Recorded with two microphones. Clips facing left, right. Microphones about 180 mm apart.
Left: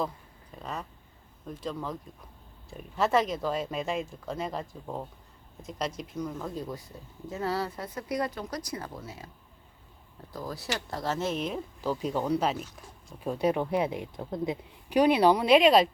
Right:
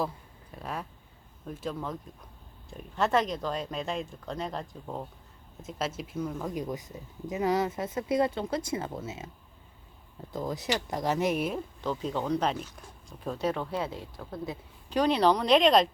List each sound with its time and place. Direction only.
0.5 s speech: 5° right (ahead or behind); by 9.3 s 25° right (ahead or behind)
10.3 s speech: 20° right (ahead or behind)
11.8 s speech: 10° left (ahead or behind)